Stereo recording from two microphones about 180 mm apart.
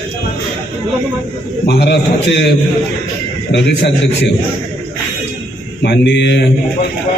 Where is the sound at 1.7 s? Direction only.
65° left (ahead or behind).